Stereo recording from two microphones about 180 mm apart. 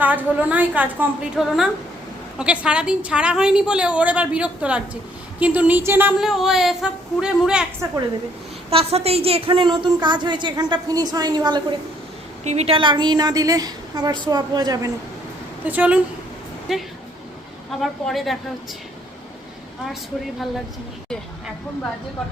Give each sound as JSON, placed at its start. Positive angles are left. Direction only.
{"t": 0.0, "sound": "a woman's voice", "side_deg": -10}
{"t": 8.7, "sound": "a woman's voice", "side_deg": -35}
{"t": 12.5, "sound": "a woman's voice", "side_deg": -35}
{"t": 15.6, "sound": "a woman's voice", "side_deg": -10}